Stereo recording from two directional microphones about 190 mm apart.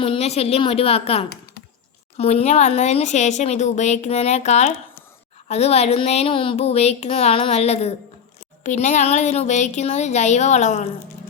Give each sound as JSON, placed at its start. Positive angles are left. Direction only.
{"t": 0.0, "sound": "speech", "side_deg": 30}